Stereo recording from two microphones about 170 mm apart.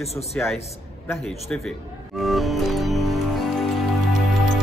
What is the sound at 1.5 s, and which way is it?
Music, centre (ahead or behind).